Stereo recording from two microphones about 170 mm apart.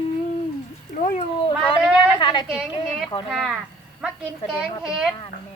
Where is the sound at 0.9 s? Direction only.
55° left (ahead or behind).